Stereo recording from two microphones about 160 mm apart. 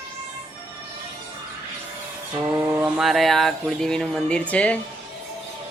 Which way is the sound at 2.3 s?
20° right (ahead or behind).